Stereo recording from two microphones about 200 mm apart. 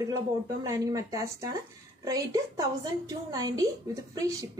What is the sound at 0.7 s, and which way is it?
A woman's voice, 15° right (ahead or behind).